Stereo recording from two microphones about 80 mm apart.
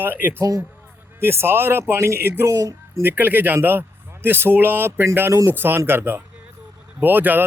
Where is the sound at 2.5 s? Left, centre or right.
Right.